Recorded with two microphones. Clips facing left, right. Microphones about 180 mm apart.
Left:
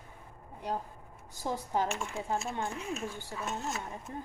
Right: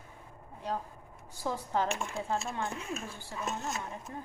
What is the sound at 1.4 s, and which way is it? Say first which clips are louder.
Speech: even; 15° left (ahead or behind).